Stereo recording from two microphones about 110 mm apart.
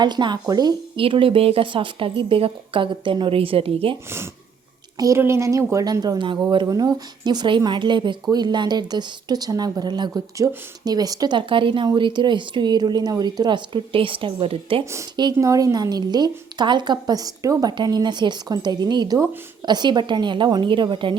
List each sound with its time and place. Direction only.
0.0 s a woman's voice: 40° right (ahead or behind)
0.9 s speech: 55° right (ahead or behind)
4.9 s a woman's voice: 30° right (ahead or behind); by 14.8 s 60° right (ahead or behind)
15.1 s a woman's voice: 40° right (ahead or behind)
15.4 s a woman's voice: 30° right (ahead or behind); by 21.2 s 50° right (ahead or behind)